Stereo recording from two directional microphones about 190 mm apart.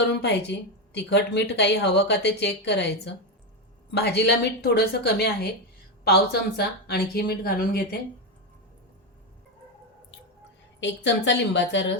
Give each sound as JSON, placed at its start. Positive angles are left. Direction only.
{"t": 0.2, "sound": "speech", "side_deg": 65}
{"t": 10.8, "sound": "a woman's voice", "side_deg": 70}